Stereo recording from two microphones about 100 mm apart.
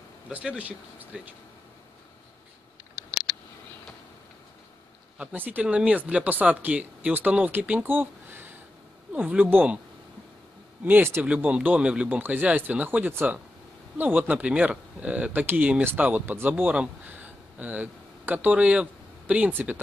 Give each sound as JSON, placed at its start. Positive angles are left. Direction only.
{"t": 0.3, "sound": "speech", "side_deg": -15}
{"t": 5.1, "sound": "speech", "side_deg": -15}
{"t": 10.9, "sound": "speech", "side_deg": -25}
{"t": 11.2, "sound": "speech", "side_deg": -10}